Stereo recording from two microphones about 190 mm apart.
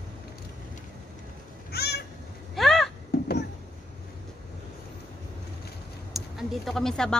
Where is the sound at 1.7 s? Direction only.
60° left (ahead or behind).